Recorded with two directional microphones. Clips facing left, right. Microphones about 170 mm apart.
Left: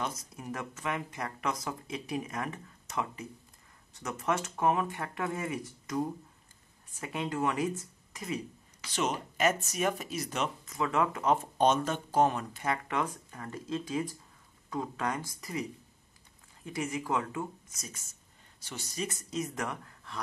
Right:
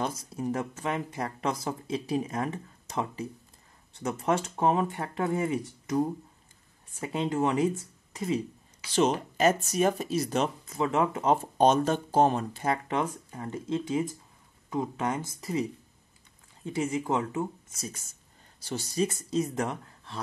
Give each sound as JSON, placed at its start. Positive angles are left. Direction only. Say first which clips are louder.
{"t": 0.2, "sound": "speech", "louder": "right 8 dB", "side_deg": -30}
{"t": 16.6, "sound": "speech", "louder": "right 5 dB", "side_deg": -30}